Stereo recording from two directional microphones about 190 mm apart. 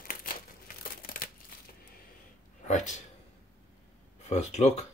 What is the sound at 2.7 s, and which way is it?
Speech, 40° left (ahead or behind).